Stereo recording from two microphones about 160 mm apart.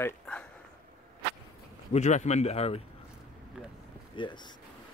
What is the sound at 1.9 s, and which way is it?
Speech, 45° left (ahead or behind).